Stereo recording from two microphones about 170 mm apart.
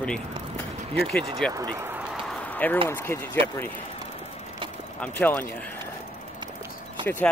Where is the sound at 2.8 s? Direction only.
15° left (ahead or behind).